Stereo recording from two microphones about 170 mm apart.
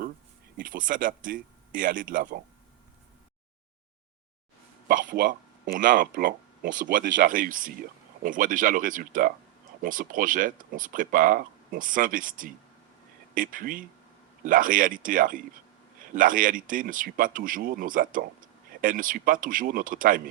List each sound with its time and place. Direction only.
0.5 s speech: 55° right (ahead or behind)
4.9 s speech: 55° right (ahead or behind)